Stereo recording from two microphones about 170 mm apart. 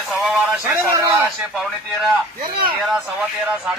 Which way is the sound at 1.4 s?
Centre (ahead or behind).